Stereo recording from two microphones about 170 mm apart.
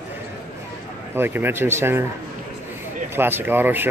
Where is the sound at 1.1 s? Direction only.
10° right (ahead or behind).